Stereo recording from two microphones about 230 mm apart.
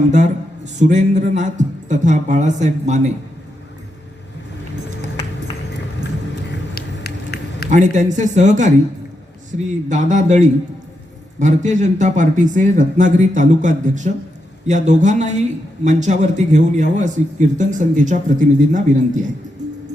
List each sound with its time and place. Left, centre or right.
0.1 s speech: right
6.7 s a sound: left
7.7 s speech: right